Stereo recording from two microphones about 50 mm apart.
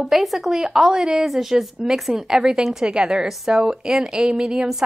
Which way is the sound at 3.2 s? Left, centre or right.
Centre.